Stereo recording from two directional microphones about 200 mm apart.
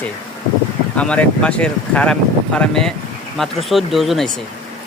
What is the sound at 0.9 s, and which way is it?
Speech, 5° left (ahead or behind).